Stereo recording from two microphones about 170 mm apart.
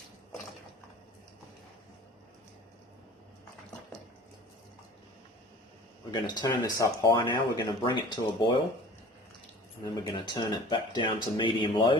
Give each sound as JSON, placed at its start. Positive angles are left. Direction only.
{"t": 6.1, "sound": "speech", "side_deg": 25}
{"t": 9.8, "sound": "speech", "side_deg": 25}